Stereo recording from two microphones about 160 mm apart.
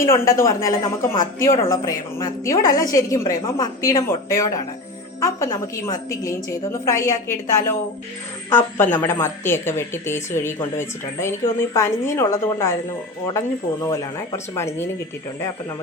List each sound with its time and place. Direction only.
0.0 s a woman's voice: 20° left (ahead or behind)
13.8 s a woman's voice: 20° left (ahead or behind)